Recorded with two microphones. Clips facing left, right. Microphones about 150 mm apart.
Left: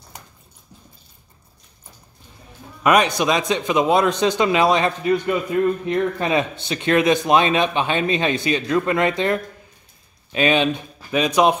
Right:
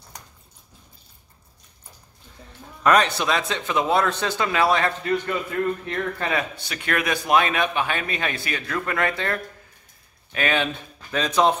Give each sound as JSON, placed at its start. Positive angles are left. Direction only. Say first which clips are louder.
{"t": 2.8, "sound": "a man's voice", "louder": "left 2 dB", "side_deg": 15}